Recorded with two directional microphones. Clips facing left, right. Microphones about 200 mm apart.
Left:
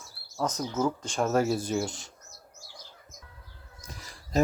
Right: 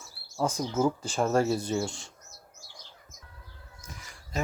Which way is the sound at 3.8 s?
35° left (ahead or behind).